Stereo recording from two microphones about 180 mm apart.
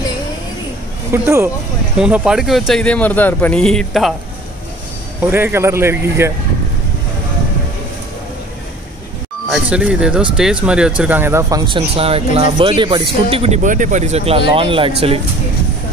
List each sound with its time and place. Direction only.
1.1 s speech: 15° right (ahead or behind); by 4.1 s centre (ahead or behind)
5.2 s speech: 15° right (ahead or behind)
9.5 s speech: 5° right (ahead or behind)
11.6 s speech: 30° right (ahead or behind)